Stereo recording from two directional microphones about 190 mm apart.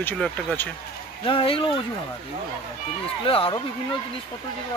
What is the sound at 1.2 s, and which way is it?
Speech, 30° left (ahead or behind).